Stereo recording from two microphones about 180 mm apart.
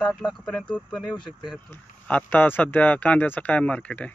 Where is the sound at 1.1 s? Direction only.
25° left (ahead or behind).